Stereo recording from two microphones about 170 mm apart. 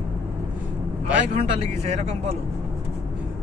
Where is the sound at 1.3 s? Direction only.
40° right (ahead or behind).